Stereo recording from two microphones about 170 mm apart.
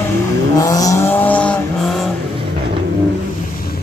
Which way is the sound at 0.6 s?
20° left (ahead or behind).